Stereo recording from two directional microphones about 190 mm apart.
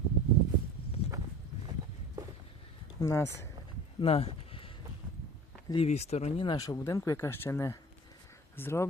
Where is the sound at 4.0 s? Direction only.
30° left (ahead or behind).